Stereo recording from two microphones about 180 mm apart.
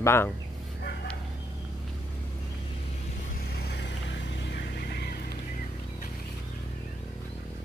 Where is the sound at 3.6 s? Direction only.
70° left (ahead or behind).